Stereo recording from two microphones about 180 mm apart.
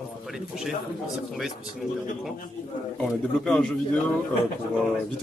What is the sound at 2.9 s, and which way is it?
Speech, 5° left (ahead or behind).